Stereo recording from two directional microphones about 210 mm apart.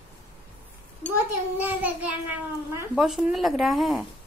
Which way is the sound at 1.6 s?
10° right (ahead or behind).